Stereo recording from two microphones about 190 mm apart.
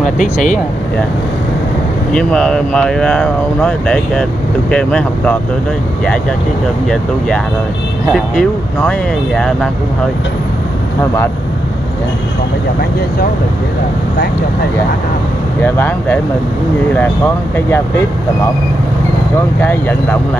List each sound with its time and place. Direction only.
0.2 s speech: 45° left (ahead or behind)
2.1 s speech: 5° left (ahead or behind)
8.1 s speech: centre (ahead or behind)
15.6 s speech: 10° left (ahead or behind)
17.6 s speech: 10° left (ahead or behind)